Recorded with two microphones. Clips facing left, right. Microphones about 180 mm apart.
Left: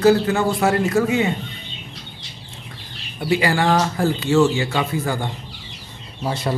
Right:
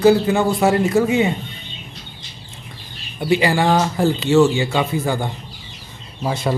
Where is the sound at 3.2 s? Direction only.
25° right (ahead or behind).